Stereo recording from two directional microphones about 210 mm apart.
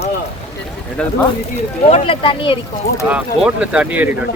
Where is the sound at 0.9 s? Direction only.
5° left (ahead or behind).